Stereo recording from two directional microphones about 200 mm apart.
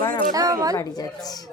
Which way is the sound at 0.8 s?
15° left (ahead or behind).